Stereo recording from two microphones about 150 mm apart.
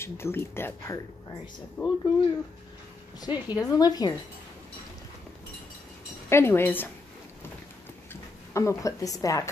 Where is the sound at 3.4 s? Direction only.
25° left (ahead or behind).